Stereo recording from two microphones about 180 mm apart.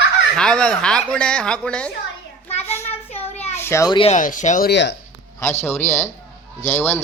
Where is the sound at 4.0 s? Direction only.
40° left (ahead or behind).